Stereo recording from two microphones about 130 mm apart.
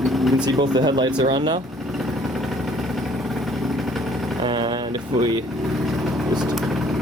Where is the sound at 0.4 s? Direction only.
35° right (ahead or behind).